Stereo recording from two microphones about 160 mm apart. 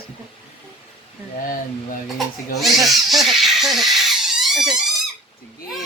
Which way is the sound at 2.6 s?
Centre (ahead or behind).